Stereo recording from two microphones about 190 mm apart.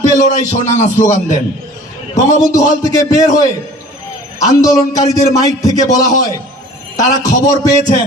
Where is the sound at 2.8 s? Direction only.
20° left (ahead or behind).